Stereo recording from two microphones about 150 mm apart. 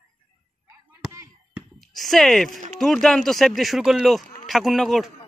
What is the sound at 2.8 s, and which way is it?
Speech, 5° left (ahead or behind).